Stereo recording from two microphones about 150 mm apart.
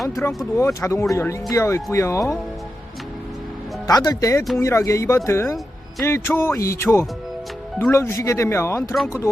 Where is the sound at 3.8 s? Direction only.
25° left (ahead or behind).